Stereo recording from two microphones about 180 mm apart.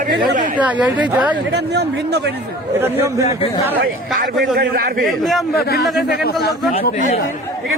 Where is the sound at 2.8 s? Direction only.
15° right (ahead or behind).